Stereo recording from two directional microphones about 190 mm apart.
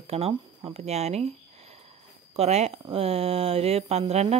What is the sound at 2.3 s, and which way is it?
Speech, 35° right (ahead or behind).